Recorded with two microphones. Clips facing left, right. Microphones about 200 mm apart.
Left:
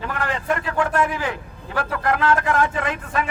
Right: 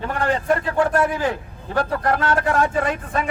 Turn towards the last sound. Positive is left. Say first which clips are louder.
# right 2 dB
turn(degrees=-35)  # may be behind; listen again after turning